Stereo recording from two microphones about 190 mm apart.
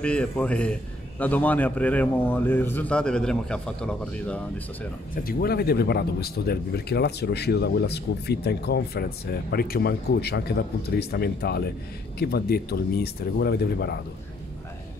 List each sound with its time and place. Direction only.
0.0 s a man's voice: 5° left (ahead or behind)
5.1 s speech: 50° left (ahead or behind)